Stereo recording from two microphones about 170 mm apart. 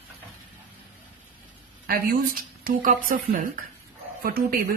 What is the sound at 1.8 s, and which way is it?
Speech, 55° right (ahead or behind).